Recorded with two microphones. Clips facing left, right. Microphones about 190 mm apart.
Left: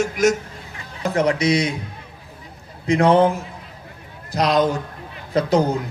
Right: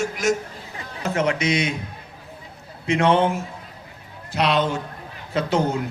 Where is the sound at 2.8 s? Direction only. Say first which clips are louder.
Left 4 dB; 35° left (ahead or behind).